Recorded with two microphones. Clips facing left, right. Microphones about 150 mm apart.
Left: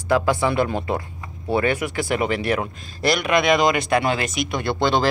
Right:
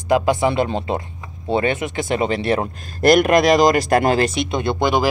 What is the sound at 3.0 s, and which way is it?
Speech, 50° right (ahead or behind).